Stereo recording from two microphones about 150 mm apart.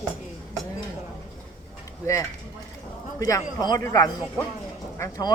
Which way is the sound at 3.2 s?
25° left (ahead or behind).